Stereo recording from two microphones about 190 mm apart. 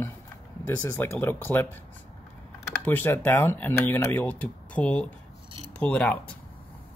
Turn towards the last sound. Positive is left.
turn(degrees=5)  # may be behind; listen again after turning